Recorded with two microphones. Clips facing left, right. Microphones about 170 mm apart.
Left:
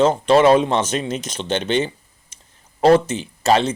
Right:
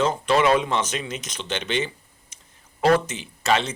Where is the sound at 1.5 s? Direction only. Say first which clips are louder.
Left 6 dB; 45° left (ahead or behind).